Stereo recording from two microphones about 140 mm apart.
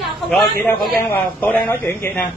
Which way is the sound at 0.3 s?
10° left (ahead or behind).